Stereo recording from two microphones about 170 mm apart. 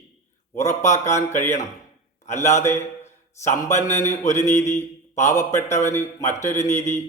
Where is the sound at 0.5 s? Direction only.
15° left (ahead or behind).